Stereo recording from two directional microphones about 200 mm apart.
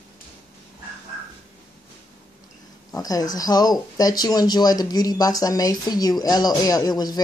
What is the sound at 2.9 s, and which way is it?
Speech, 20° left (ahead or behind).